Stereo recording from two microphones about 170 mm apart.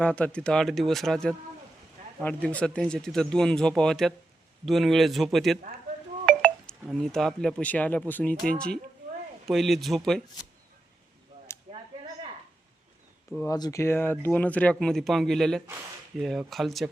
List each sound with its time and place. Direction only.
0.0 s speech: 5° left (ahead or behind)
6.2 s telephone dialing: centre (ahead or behind)
7.6 s speech: 10° left (ahead or behind)
11.7 s a sound: 35° right (ahead or behind)
13.5 s speech: 20° left (ahead or behind); by 16.9 s centre (ahead or behind)